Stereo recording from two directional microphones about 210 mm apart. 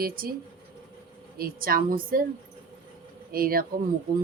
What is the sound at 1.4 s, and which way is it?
Speech, 45° right (ahead or behind).